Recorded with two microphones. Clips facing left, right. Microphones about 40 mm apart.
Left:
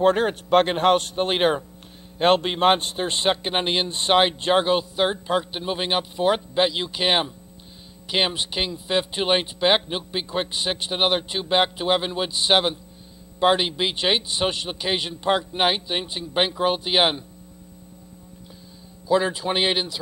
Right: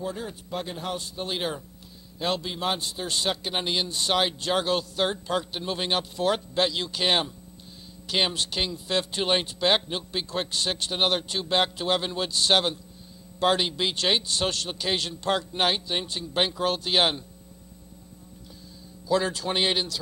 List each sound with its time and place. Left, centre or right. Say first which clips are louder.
0.0 s a man's voice: left 14 dB; left; by 17.2 s centre
19.0 s a man's voice: left 4 dB; centre